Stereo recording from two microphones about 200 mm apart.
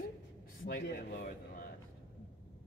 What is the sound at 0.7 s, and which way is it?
Speech, 50° left (ahead or behind).